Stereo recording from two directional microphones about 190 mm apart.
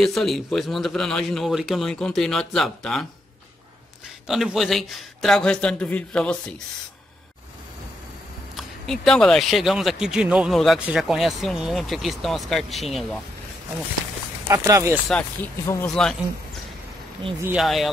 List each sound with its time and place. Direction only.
0.0 s speech: centre (ahead or behind)
4.3 s speech: centre (ahead or behind)
8.5 s speech: centre (ahead or behind)
14.5 s speech: 15° right (ahead or behind)
15.6 s speech: 15° left (ahead or behind)
15.9 s speech: centre (ahead or behind)
17.5 s speech: centre (ahead or behind)